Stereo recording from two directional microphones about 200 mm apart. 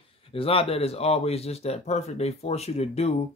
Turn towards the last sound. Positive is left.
turn(degrees=30)  # may be behind; listen again after turning